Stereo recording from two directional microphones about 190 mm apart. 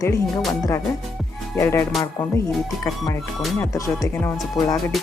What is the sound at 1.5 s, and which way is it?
Speech, 15° left (ahead or behind).